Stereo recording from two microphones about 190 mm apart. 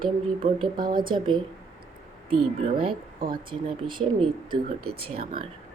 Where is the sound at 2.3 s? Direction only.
30° right (ahead or behind).